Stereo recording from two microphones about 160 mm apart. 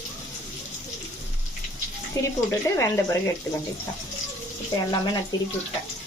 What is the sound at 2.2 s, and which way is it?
Speech, 15° left (ahead or behind).